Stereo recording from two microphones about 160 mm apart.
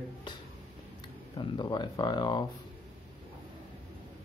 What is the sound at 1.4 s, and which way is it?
Speech, 30° left (ahead or behind).